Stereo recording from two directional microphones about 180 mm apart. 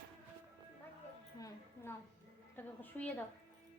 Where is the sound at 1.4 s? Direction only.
15° left (ahead or behind).